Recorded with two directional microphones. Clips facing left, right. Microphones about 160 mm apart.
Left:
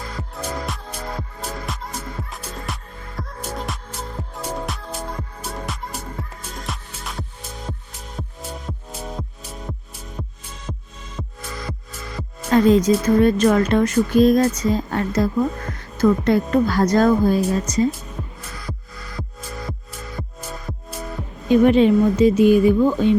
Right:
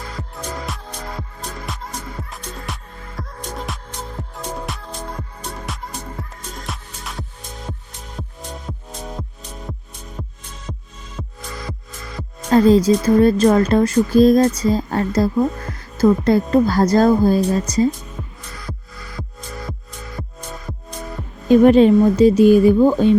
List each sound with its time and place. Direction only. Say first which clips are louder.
0.2 s music: left 2 dB; centre (ahead or behind)
11.2 s music: even; centre (ahead or behind)
12.5 s speech: right 2 dB; 35° right (ahead or behind)
13.1 s music: right 3 dB; 35° right (ahead or behind)
19.1 s music: even; 5° left (ahead or behind)
21.5 s music: right 3 dB; 40° right (ahead or behind)